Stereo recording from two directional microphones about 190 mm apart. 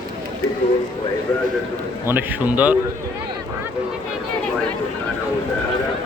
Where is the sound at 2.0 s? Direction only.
10° right (ahead or behind).